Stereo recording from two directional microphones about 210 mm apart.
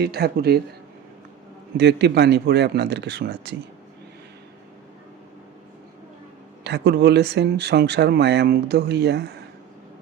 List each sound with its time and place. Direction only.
0.0 s speech: 50° right (ahead or behind)
1.8 s speech: 55° right (ahead or behind)
6.7 s speech: 55° right (ahead or behind)